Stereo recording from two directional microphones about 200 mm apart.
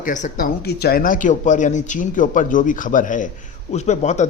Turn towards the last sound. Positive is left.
turn(degrees=35)  # may be behind; listen again after turning